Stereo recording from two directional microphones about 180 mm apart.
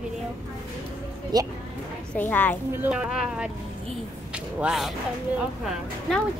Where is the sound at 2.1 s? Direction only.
10° left (ahead or behind).